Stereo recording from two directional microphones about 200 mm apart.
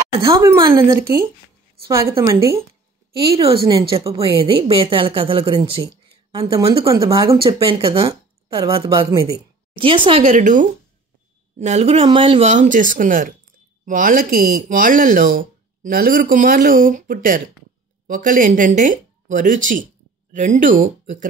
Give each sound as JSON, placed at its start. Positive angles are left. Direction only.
{"t": 0.2, "sound": "speech", "side_deg": -10}
{"t": 1.9, "sound": "speech", "side_deg": -15}
{"t": 10.2, "sound": "speech", "side_deg": -40}